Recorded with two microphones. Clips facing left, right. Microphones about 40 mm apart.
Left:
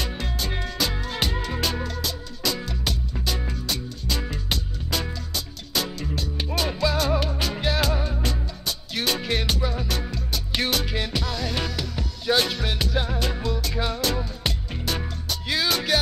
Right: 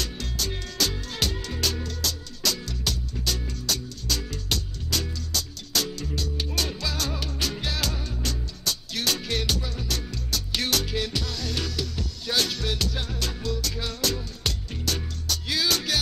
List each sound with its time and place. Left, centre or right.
0.0 s music: left